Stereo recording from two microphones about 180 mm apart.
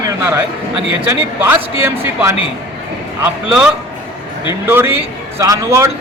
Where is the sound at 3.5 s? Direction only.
5° right (ahead or behind).